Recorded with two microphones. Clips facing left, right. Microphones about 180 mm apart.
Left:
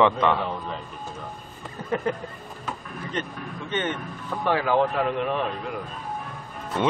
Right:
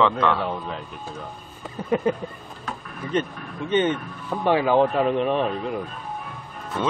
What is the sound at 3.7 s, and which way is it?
Speech, 15° right (ahead or behind).